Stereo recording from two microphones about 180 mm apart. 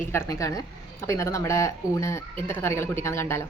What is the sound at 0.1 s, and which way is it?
A woman's voice, 15° left (ahead or behind).